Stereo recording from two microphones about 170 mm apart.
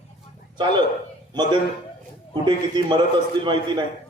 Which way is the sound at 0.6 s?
25° right (ahead or behind).